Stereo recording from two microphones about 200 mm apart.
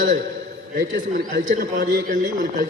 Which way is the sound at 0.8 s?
70° right (ahead or behind).